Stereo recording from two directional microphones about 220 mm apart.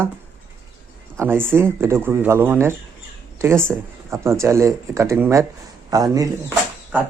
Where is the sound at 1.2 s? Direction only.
10° right (ahead or behind).